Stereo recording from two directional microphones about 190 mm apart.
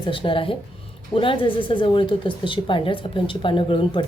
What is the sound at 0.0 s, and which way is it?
Speech, 25° left (ahead or behind).